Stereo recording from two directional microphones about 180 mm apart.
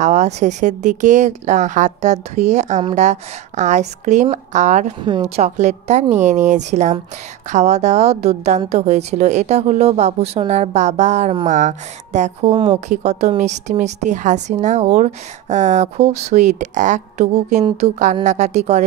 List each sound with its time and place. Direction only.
0.0 s a woman's voice: 40° right (ahead or behind)
5.0 s a woman's voice: 30° right (ahead or behind)
12.8 s a woman's voice: 40° right (ahead or behind)